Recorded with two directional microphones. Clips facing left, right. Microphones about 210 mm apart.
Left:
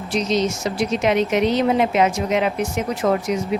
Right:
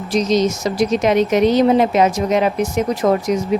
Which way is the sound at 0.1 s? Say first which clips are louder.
Right 4 dB; 40° right (ahead or behind).